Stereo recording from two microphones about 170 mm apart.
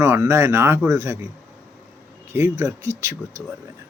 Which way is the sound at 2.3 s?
15° right (ahead or behind).